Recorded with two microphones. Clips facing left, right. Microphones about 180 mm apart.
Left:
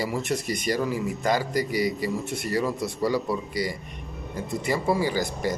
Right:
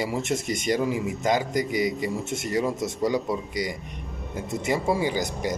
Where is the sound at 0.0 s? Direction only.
25° right (ahead or behind).